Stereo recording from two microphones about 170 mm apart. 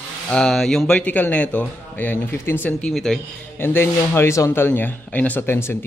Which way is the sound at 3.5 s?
15° left (ahead or behind).